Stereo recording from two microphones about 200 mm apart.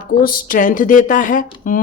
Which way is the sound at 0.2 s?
45° left (ahead or behind).